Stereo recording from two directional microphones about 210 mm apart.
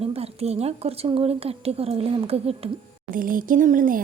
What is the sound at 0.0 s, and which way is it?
A woman's voice, 30° right (ahead or behind).